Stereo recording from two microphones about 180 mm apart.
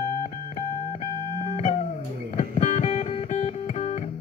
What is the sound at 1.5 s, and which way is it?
Music, 40° left (ahead or behind).